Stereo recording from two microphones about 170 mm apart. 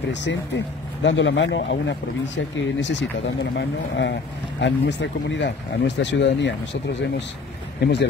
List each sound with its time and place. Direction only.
0.1 s speech: 90° left